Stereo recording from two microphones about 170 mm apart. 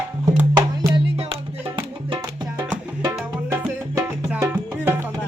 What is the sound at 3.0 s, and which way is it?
Music, 20° right (ahead or behind).